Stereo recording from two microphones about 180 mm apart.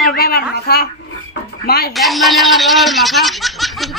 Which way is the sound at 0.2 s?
60° left (ahead or behind).